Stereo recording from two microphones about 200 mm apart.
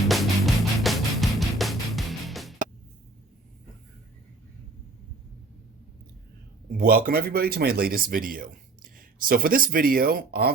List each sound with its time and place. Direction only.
0.1 s music: centre (ahead or behind)
6.7 s speech: 45° right (ahead or behind)